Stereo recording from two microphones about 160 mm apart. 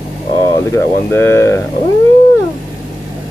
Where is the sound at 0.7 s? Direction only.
15° left (ahead or behind).